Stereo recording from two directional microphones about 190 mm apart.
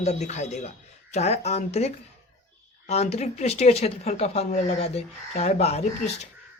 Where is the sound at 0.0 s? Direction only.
35° left (ahead or behind).